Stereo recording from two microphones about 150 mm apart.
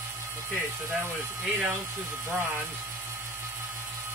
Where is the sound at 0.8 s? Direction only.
20° right (ahead or behind).